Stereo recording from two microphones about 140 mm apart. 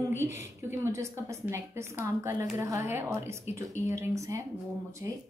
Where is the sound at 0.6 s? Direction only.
20° right (ahead or behind).